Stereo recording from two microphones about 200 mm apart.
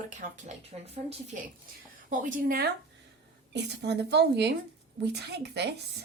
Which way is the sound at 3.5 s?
60° right (ahead or behind).